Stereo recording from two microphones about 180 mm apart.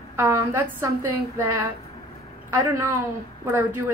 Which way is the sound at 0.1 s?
15° right (ahead or behind).